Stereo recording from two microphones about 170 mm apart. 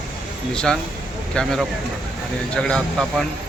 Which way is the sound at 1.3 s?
5° left (ahead or behind).